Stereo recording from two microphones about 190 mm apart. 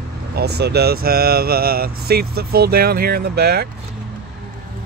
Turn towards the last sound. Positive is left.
turn(degrees=-60)  # may be behind; listen again after turning